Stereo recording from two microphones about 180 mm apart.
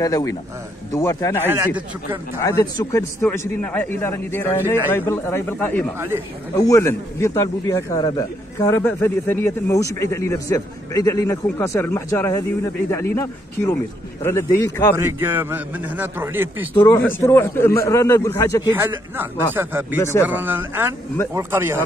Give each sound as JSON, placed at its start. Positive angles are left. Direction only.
{"t": 0.0, "sound": "a man's voice", "side_deg": 20}
{"t": 1.4, "sound": "a man's voice", "side_deg": -10}
{"t": 2.4, "sound": "a man's voice", "side_deg": 15}
{"t": 5.9, "sound": "a man's voice", "side_deg": -15}
{"t": 6.5, "sound": "a man's voice", "side_deg": 15}
{"t": 15.0, "sound": "a man's voice", "side_deg": -15}
{"t": 16.7, "sound": "a man's voice", "side_deg": 20}
{"t": 18.8, "sound": "a man's voice", "side_deg": -10}
{"t": 20.0, "sound": "a man's voice", "side_deg": 15}
{"t": 20.2, "sound": "a man's voice", "side_deg": -10}